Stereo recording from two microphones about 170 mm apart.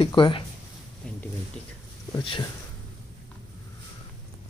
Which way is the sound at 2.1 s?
30° left (ahead or behind).